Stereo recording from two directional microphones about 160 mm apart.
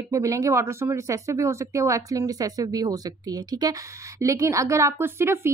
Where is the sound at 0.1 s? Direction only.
20° right (ahead or behind).